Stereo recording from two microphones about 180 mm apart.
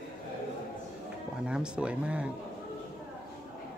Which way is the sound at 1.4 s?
5° right (ahead or behind).